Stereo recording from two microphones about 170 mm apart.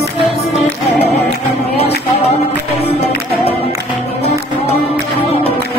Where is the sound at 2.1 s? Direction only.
35° left (ahead or behind).